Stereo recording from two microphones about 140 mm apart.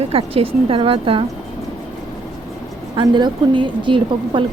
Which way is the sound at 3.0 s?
35° right (ahead or behind).